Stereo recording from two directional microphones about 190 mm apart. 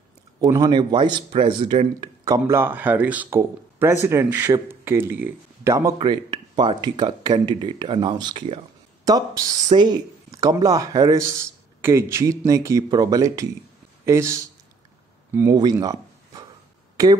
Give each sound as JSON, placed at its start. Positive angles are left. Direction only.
{"t": 0.4, "sound": "speech", "side_deg": -20}
{"t": 2.2, "sound": "a man's voice", "side_deg": -15}
{"t": 16.9, "sound": "a sound", "side_deg": -20}